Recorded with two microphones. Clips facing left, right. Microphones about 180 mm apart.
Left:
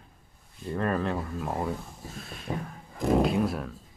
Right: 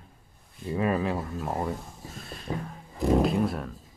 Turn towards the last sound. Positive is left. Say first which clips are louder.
# even
turn(degrees=0)  # may be behind; listen again after turning